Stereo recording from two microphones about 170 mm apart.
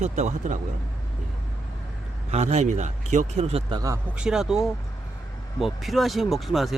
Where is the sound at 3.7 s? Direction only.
20° right (ahead or behind).